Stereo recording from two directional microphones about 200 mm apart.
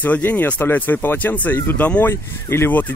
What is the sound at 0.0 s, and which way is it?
Speech, 10° left (ahead or behind).